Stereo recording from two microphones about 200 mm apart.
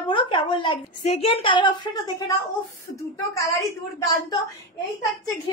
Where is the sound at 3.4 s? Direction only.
15° left (ahead or behind).